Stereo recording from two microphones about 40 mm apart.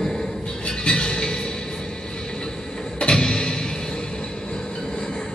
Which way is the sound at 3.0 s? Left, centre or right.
Centre.